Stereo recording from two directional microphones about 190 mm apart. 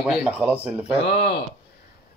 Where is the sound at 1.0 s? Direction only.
60° left (ahead or behind).